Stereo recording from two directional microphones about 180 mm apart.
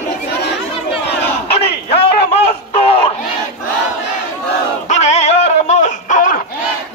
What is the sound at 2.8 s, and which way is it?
Battle cry, 30° left (ahead or behind).